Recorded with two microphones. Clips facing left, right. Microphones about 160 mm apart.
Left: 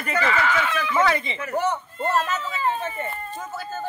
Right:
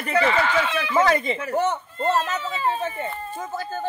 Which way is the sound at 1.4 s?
25° right (ahead or behind).